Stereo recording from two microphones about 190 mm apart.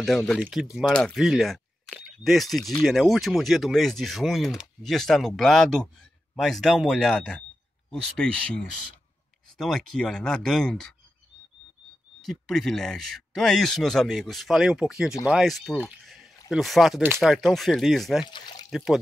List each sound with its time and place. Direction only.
0.0 s speech: centre (ahead or behind)
12.2 s speech: centre (ahead or behind)
18.2 s pour: 25° left (ahead or behind)
18.7 s speech: centre (ahead or behind)